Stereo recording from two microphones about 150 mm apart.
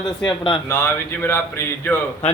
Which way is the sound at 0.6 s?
15° left (ahead or behind).